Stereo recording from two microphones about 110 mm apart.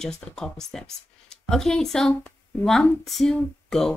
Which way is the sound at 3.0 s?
Centre (ahead or behind).